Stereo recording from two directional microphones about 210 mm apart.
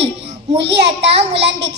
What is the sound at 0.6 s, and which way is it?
A child's voice, 55° right (ahead or behind).